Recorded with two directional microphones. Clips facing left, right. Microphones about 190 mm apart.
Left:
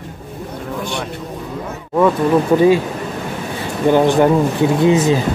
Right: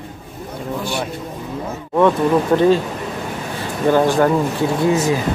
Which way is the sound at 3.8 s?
20° left (ahead or behind).